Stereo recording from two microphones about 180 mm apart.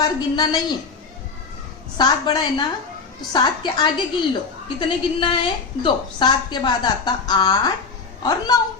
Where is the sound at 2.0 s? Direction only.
25° left (ahead or behind).